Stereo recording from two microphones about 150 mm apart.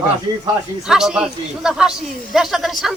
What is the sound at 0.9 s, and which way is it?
A man's voice, 5° right (ahead or behind).